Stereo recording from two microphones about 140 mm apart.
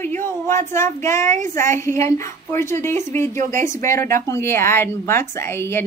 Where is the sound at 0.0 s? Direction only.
15° left (ahead or behind).